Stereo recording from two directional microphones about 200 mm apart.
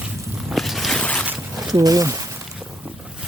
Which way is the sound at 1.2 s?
10° right (ahead or behind).